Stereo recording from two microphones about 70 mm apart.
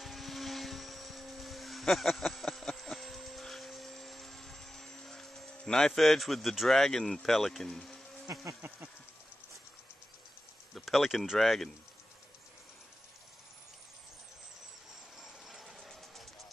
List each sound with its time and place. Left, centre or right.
0.0 s vehicle: centre
8.3 s speech: right
10.7 s speech: centre
15.1 s a sound: centre